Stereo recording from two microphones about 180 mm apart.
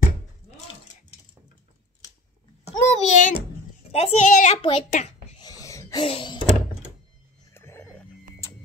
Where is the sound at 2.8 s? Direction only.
40° left (ahead or behind).